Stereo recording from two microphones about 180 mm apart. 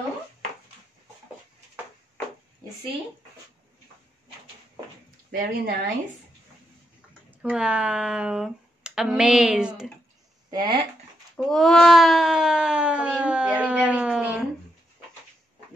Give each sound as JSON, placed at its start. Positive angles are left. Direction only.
{"t": 5.3, "sound": "speech", "side_deg": -55}
{"t": 7.2, "sound": "speech", "side_deg": -5}
{"t": 10.5, "sound": "speech", "side_deg": -25}
{"t": 11.3, "sound": "a sound", "side_deg": 0}